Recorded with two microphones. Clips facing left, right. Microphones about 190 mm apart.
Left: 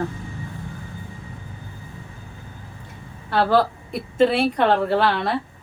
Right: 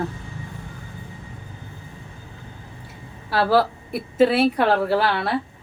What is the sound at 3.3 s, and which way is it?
A woman's voice, 5° right (ahead or behind).